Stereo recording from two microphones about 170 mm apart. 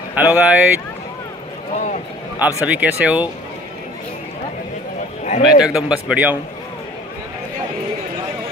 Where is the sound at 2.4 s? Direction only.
10° right (ahead or behind).